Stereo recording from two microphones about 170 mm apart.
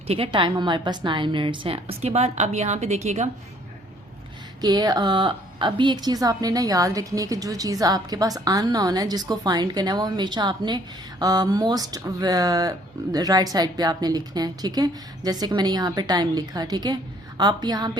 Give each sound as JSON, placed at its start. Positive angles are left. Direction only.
{"t": 0.1, "sound": "a woman's voice", "side_deg": -30}
{"t": 4.6, "sound": "a woman's voice", "side_deg": -25}